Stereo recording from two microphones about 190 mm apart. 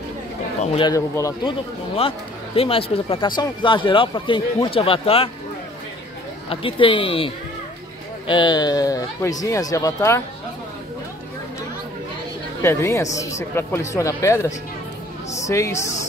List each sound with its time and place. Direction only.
0.7 s speech: 20° left (ahead or behind)
2.0 s speech: 30° left (ahead or behind)
6.5 s speech: 30° left (ahead or behind)
12.6 s speech: 15° left (ahead or behind)